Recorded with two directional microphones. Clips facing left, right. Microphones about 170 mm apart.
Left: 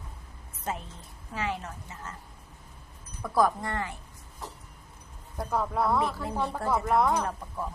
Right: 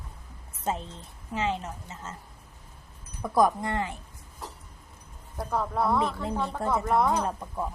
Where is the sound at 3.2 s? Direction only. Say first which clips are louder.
Right 2 dB; 20° right (ahead or behind).